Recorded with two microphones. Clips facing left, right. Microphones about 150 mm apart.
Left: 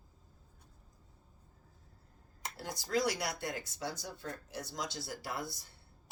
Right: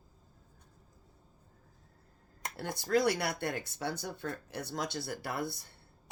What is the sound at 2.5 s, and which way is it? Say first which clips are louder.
Speech: right 5 dB; 60° right (ahead or behind).